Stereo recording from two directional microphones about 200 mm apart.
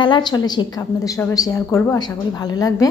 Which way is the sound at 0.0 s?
20° left (ahead or behind).